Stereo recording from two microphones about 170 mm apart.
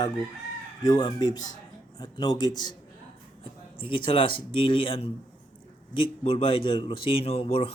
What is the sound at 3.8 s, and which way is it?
A man's voice, 30° left (ahead or behind).